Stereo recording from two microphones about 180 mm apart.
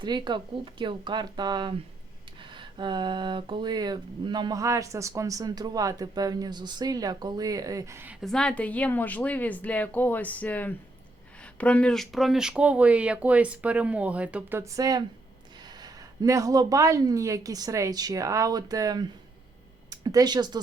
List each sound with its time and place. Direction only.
0.0 s speech: 25° right (ahead or behind)
8.2 s a woman's voice: 5° left (ahead or behind); by 20.6 s 25° right (ahead or behind)